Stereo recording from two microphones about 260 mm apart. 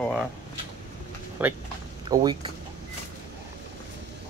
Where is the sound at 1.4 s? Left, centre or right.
Centre.